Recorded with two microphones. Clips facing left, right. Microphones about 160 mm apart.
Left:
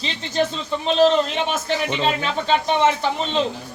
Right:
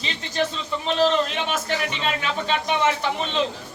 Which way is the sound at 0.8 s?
25° left (ahead or behind).